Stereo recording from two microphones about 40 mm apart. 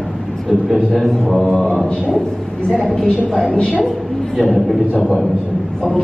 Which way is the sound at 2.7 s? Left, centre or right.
Centre.